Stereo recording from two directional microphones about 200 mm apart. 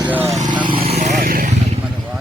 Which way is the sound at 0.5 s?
25° right (ahead or behind).